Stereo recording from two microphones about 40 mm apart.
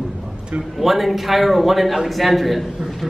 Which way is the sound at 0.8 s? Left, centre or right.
Centre.